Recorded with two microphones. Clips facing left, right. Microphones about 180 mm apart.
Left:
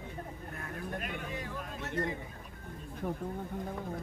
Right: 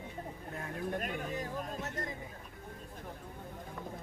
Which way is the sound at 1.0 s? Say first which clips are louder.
Right 2 dB; 40° right (ahead or behind).